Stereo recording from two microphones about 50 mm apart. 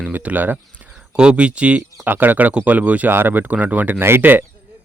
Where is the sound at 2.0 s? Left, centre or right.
Right.